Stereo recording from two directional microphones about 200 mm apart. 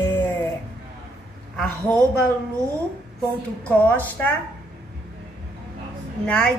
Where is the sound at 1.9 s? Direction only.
5° left (ahead or behind).